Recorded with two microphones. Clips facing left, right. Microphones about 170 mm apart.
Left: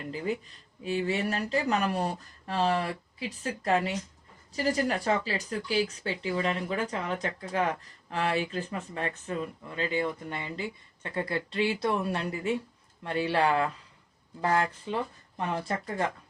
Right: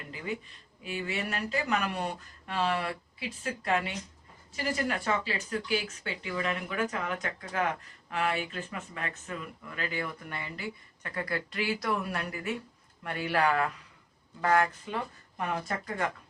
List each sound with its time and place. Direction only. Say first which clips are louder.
0.9 s speech: left 6 dB; 35° left (ahead or behind)